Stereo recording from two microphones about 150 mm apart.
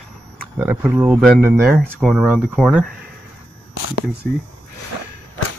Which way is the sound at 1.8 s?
Centre (ahead or behind).